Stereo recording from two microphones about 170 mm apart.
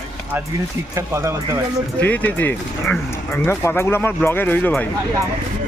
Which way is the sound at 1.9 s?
10° left (ahead or behind).